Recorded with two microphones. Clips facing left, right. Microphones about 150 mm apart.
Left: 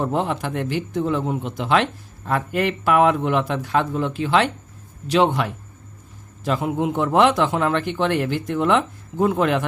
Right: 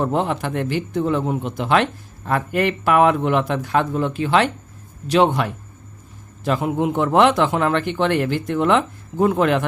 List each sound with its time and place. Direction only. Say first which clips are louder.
0.0 s a man's voice: right 2 dB; 55° right (ahead or behind)
6.9 s speech: right 1 dB; 65° right (ahead or behind)